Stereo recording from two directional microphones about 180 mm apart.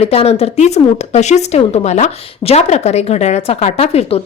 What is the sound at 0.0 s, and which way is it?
A woman's voice, 35° left (ahead or behind).